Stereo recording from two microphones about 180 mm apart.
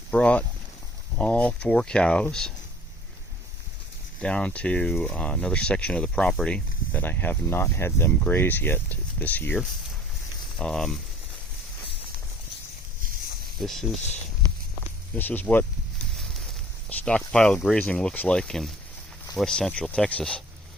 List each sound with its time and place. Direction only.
0.1 s speech: 5° left (ahead or behind)
4.2 s speech: 5° left (ahead or behind)
10.6 s speech: 5° left (ahead or behind)
13.6 s speech: centre (ahead or behind)
15.1 s speech: 10° left (ahead or behind)
16.9 s speech: 5° left (ahead or behind)